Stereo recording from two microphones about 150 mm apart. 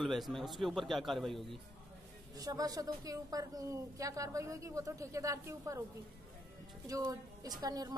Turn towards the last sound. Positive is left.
turn(degrees=-25)  # may be behind; listen again after turning